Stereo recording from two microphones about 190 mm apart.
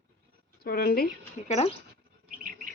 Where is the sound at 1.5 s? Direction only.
35° left (ahead or behind).